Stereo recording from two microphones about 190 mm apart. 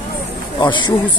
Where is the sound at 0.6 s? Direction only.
25° left (ahead or behind).